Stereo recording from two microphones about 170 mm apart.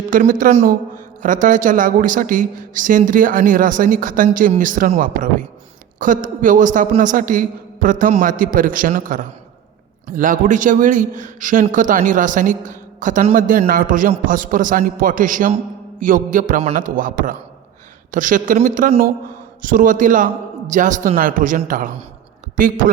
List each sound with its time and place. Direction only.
0.1 s a woman's voice: 50° right (ahead or behind)